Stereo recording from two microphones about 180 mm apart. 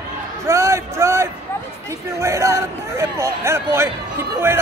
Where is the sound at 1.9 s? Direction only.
15° right (ahead or behind).